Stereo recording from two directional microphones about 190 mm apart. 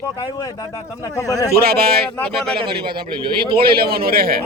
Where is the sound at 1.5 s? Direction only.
55° right (ahead or behind).